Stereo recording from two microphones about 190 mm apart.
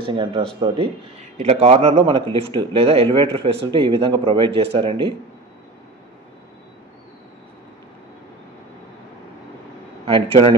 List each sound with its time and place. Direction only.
0.0 s speech: 25° right (ahead or behind)
1.4 s speech: 35° right (ahead or behind)
10.0 s a man's voice: 30° right (ahead or behind)